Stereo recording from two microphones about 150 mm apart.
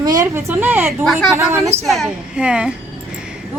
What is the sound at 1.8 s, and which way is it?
Speech, centre (ahead or behind).